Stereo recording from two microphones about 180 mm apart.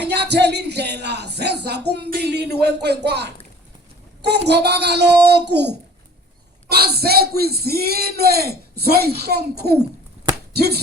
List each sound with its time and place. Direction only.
0.0 s speech: 70° right (ahead or behind)
10.3 s chopping: 60° right (ahead or behind)